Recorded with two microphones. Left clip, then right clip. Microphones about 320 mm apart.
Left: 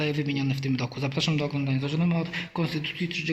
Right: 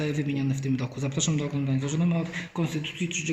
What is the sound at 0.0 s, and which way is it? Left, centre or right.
Speech, centre.